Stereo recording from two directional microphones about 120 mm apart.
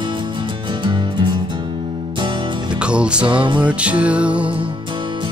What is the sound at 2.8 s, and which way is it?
Music, 10° right (ahead or behind).